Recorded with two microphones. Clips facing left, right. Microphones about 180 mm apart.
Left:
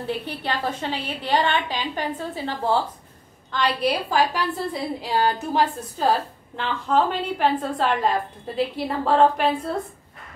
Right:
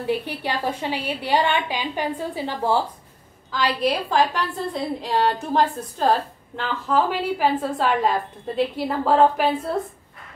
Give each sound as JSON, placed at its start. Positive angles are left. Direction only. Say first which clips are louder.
{"t": 0.0, "sound": "a woman's voice", "louder": "right 3 dB", "side_deg": -10}
{"t": 3.5, "sound": "a woman's voice", "louder": "right 1 dB", "side_deg": 0}